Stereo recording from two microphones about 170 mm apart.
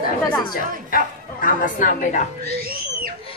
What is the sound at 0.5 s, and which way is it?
Speech, 55° left (ahead or behind).